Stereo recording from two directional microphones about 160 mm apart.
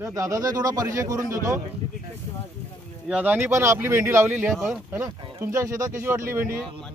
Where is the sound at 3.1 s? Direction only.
10° right (ahead or behind).